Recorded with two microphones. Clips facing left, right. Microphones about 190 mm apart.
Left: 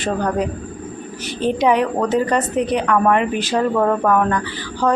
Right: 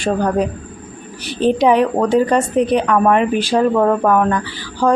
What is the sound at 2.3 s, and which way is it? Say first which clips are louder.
Speech: right 4 dB; 15° right (ahead or behind).